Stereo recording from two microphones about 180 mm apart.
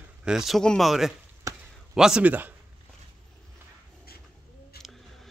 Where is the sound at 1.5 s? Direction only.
20° right (ahead or behind).